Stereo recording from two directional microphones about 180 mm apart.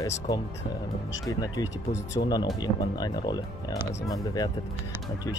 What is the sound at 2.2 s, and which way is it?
Speech, 40° left (ahead or behind).